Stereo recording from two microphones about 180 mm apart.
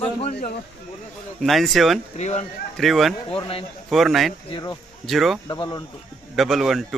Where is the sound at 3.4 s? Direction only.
30° left (ahead or behind).